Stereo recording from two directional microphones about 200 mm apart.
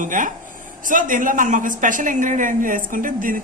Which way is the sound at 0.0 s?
40° right (ahead or behind).